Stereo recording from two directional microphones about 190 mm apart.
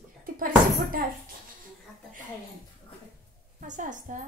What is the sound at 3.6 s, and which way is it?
Speech, 40° right (ahead or behind).